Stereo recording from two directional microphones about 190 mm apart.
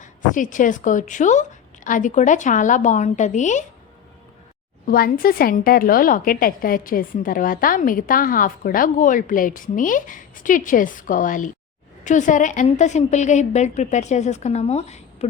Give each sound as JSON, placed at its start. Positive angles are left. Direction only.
{"t": 0.0, "sound": "a woman's voice", "side_deg": 40}
{"t": 4.9, "sound": "a woman's voice", "side_deg": 50}